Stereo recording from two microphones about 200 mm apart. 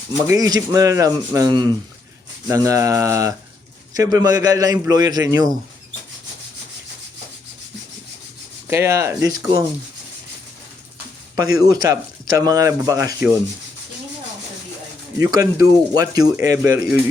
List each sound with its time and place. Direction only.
0.3 s a man's voice: 15° right (ahead or behind)
8.6 s speech: 15° right (ahead or behind)
11.3 s speech: 20° right (ahead or behind)
15.2 s speech: 15° right (ahead or behind)